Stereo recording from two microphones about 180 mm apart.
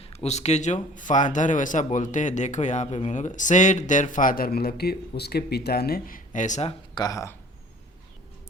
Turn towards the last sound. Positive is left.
turn(degrees=20)  # may be behind; listen again after turning